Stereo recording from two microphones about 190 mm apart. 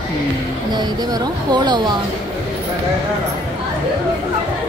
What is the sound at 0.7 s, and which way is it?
Speech, 20° right (ahead or behind).